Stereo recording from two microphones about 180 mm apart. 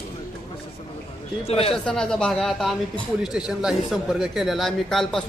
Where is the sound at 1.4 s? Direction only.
35° left (ahead or behind).